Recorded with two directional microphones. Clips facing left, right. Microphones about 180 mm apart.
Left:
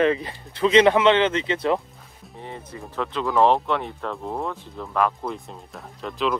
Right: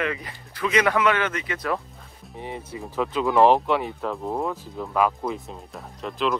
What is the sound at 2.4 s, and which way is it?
Speech, 10° right (ahead or behind).